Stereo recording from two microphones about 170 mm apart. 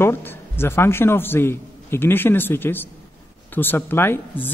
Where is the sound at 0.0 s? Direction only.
10° left (ahead or behind).